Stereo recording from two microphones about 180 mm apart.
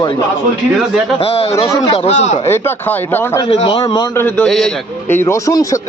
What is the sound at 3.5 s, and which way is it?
Speech, 30° left (ahead or behind).